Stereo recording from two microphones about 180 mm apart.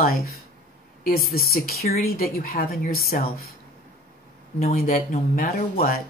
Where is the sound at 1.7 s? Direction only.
60° left (ahead or behind).